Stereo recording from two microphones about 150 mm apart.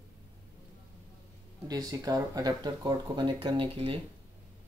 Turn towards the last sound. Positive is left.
turn(degrees=-35)  # may be behind; listen again after turning